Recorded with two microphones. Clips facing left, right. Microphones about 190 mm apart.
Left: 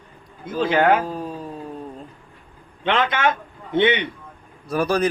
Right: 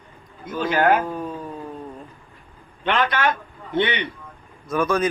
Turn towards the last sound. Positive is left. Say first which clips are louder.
# left 1 dB
turn(degrees=35)  # may be behind; listen again after turning